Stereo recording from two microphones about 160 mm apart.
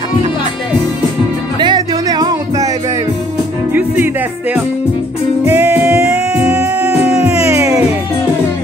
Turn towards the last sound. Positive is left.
turn(degrees=-15)  # may be behind; listen again after turning